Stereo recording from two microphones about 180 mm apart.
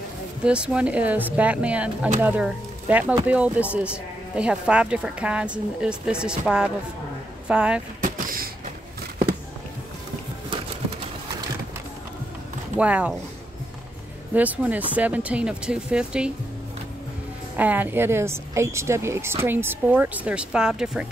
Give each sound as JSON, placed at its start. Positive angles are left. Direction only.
{"t": 0.4, "sound": "a woman's voice", "side_deg": -5}
{"t": 8.0, "sound": "a sound", "side_deg": -50}
{"t": 12.7, "sound": "a woman's voice", "side_deg": -5}
{"t": 14.3, "sound": "a woman's voice", "side_deg": -10}
{"t": 17.6, "sound": "a woman's voice", "side_deg": -10}